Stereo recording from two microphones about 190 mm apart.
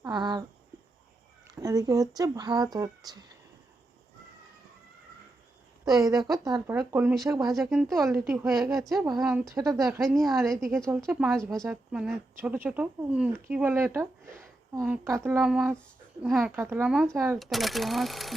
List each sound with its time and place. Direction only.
0.0 s a sound: 20° right (ahead or behind)
1.5 s speech: 20° right (ahead or behind)
5.8 s speech: 20° right (ahead or behind)
6.7 s speech: 10° right (ahead or behind)
7.5 s speech: centre (ahead or behind)
9.6 s speech: 15° right (ahead or behind)
10.0 s speech: centre (ahead or behind)
10.9 s speech: 5° right (ahead or behind)
17.4 s speech: centre (ahead or behind)